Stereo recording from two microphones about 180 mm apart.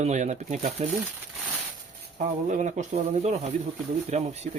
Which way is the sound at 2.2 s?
40° right (ahead or behind).